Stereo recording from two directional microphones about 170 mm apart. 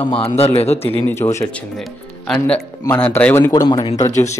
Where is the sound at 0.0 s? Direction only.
35° left (ahead or behind).